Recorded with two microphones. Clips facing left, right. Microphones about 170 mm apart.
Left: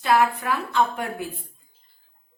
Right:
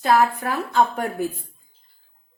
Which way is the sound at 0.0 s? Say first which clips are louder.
Right 2 dB; 40° right (ahead or behind).